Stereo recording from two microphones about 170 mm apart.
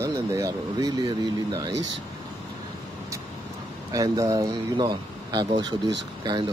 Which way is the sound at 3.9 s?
20° right (ahead or behind).